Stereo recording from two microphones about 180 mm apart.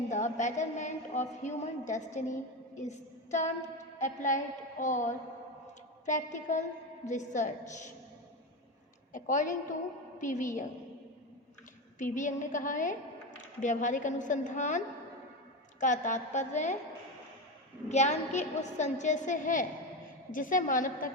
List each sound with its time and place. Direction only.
0.1 s a woman's voice: 40° left (ahead or behind)
2.1 s child singing: 40° left (ahead or behind)
3.9 s a woman's voice: 40° left (ahead or behind)
9.1 s a woman's voice: 45° left (ahead or behind)
11.9 s a woman's voice: 45° left (ahead or behind)
15.8 s a woman's voice: 45° left (ahead or behind)
17.8 s a woman's voice: 40° left (ahead or behind)